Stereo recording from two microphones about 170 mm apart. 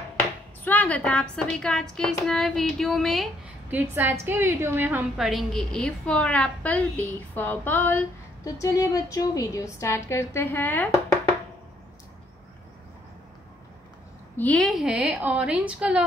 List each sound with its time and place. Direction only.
0.7 s a woman's voice: 10° left (ahead or behind)
3.7 s a woman's voice: 15° right (ahead or behind); by 11.1 s 10° left (ahead or behind)
14.3 s a woman's voice: 10° left (ahead or behind)